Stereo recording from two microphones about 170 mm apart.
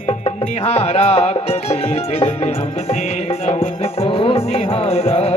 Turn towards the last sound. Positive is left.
turn(degrees=35)  # may be behind; listen again after turning